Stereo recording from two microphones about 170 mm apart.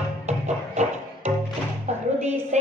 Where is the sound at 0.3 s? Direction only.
40° right (ahead or behind).